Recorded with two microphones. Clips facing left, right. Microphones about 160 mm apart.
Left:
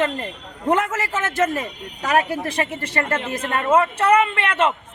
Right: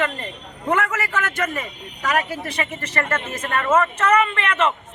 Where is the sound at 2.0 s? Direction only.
40° left (ahead or behind).